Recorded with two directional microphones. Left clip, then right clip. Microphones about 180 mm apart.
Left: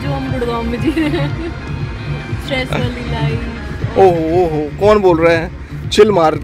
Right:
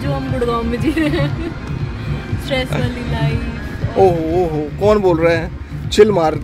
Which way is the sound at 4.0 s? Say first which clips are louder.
Left 3 dB; 5° right (ahead or behind).